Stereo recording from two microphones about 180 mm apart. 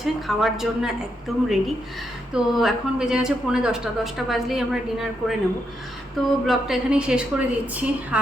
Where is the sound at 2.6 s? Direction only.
5° right (ahead or behind).